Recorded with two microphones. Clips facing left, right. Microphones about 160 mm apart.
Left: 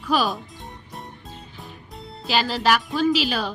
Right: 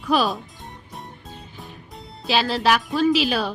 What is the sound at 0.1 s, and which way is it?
Music, centre (ahead or behind).